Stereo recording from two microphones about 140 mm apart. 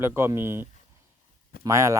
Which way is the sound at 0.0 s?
20° right (ahead or behind).